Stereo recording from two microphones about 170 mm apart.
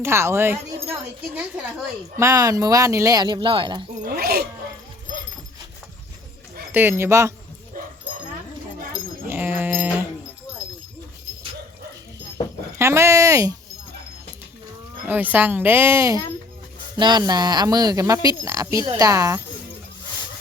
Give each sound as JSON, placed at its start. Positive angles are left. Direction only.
{"t": 0.0, "sound": "speech", "side_deg": -15}
{"t": 4.0, "sound": "speech", "side_deg": -60}
{"t": 6.7, "sound": "speech", "side_deg": -15}
{"t": 9.2, "sound": "dog", "side_deg": -10}
{"t": 12.8, "sound": "speech", "side_deg": -15}
{"t": 15.0, "sound": "speech", "side_deg": -10}